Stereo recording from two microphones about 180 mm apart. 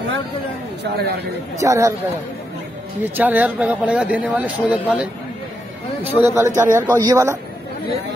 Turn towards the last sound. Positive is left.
turn(degrees=-15)  # may be behind; listen again after turning